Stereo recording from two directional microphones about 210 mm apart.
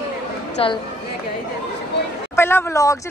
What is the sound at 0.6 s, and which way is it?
Speech, 25° left (ahead or behind).